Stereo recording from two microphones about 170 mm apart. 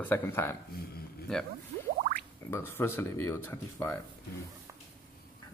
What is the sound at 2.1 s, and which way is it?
Speech, 15° left (ahead or behind).